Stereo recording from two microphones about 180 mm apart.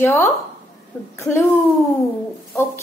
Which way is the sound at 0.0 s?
15° left (ahead or behind).